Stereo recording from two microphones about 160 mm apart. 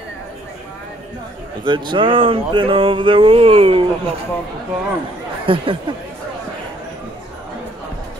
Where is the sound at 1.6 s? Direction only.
30° right (ahead or behind).